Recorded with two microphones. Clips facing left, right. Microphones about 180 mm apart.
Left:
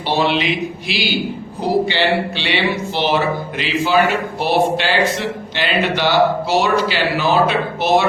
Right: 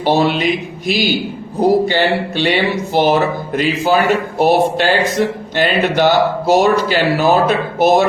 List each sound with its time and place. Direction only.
0.0 s speech: 45° right (ahead or behind)